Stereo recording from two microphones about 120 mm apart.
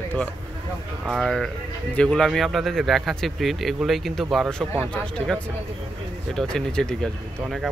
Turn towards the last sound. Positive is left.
turn(degrees=5)  # may be behind; listen again after turning